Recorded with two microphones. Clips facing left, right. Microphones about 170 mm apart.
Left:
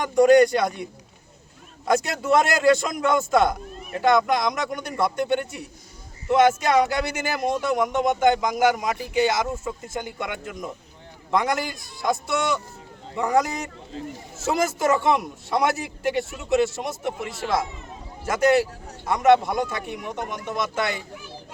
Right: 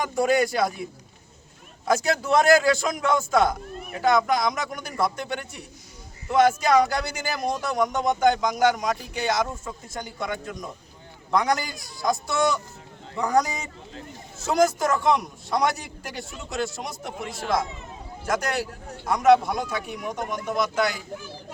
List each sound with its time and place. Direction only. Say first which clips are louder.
0.0 s a man's voice: left 7 dB; 5° right (ahead or behind)